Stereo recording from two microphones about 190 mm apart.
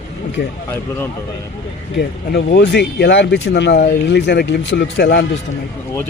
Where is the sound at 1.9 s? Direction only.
60° left (ahead or behind).